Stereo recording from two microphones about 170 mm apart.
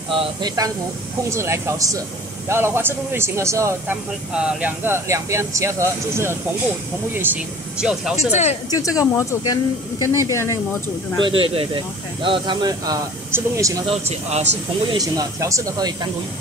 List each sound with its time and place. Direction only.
0.1 s speech: 30° right (ahead or behind)
1.3 s a man's voice: 15° right (ahead or behind)
7.8 s speech: 5° right (ahead or behind)
8.3 s speech: 40° left (ahead or behind)
8.6 s speech: 20° left (ahead or behind)
11.2 s speech: 30° right (ahead or behind)
13.8 s speech: 40° right (ahead or behind)
14.9 s speech: 20° right (ahead or behind)